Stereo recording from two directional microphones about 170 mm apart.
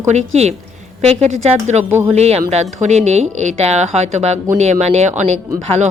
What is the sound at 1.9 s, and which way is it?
Speech, 15° right (ahead or behind).